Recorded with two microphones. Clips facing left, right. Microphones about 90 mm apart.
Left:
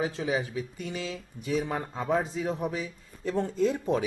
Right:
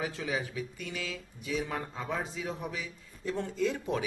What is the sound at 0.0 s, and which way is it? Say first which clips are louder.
Speech: left 5 dB; 30° left (ahead or behind).